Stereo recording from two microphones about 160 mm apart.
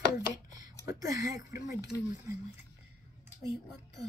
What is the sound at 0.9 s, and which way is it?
Speech, 20° right (ahead or behind).